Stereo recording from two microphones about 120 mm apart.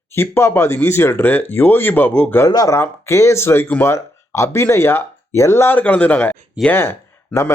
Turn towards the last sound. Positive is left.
turn(degrees=20)  # may be behind; listen again after turning